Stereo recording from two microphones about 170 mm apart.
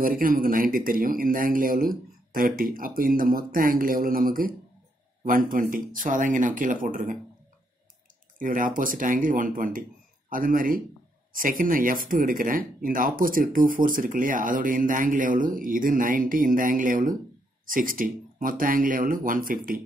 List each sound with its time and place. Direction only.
0.0 s speech: 55° right (ahead or behind)
8.4 s speech: 55° right (ahead or behind)